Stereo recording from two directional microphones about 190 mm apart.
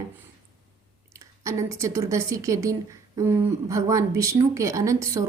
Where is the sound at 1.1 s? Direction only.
15° right (ahead or behind).